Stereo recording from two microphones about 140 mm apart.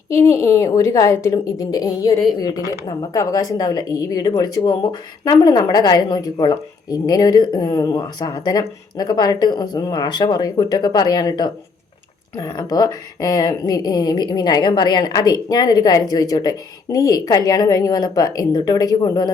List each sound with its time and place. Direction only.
0.1 s a woman's voice: 20° left (ahead or behind)